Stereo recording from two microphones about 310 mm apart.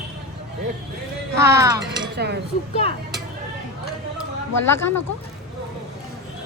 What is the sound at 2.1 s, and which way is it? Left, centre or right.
Speech, right.